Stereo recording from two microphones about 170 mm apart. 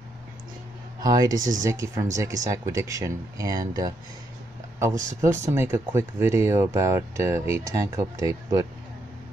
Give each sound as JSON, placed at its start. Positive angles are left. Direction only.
{"t": 1.0, "sound": "speech", "side_deg": -20}
{"t": 5.2, "sound": "speech", "side_deg": -15}